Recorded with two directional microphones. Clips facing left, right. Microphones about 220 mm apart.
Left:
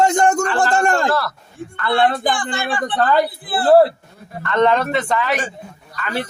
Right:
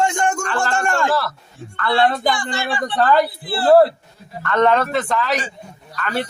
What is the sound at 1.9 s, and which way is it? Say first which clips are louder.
Speech: even; 50° left (ahead or behind).